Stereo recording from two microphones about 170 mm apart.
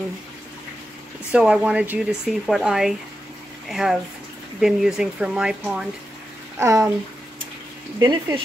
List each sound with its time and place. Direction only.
1.3 s speech: 5° right (ahead or behind)
6.6 s speech: 20° right (ahead or behind)
8.0 s speech: 25° right (ahead or behind)